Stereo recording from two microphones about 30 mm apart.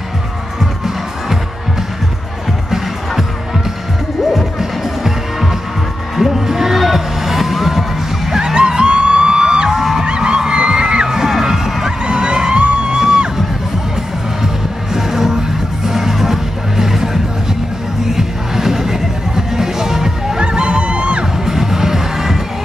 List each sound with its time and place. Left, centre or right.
0.6 s music: centre
4.3 s music: centre
8.5 s music: right
10.0 s a sound: right
11.1 s music: centre
12.0 s a sound: right
12.9 s music: centre
14.4 s music: centre
20.3 s music: right
21.5 s music: centre